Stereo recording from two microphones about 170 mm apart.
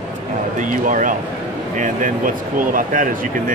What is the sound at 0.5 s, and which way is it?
Speech, 50° right (ahead or behind).